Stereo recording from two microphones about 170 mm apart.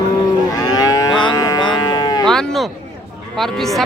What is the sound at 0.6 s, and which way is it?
Moo, 20° left (ahead or behind).